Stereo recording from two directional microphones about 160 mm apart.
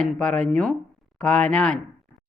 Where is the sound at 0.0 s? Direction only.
5° left (ahead or behind).